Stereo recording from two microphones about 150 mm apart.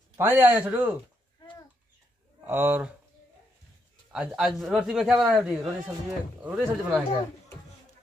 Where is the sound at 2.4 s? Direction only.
15° right (ahead or behind).